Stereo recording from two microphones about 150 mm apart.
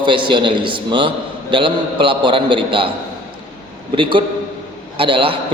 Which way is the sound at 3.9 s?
35° right (ahead or behind).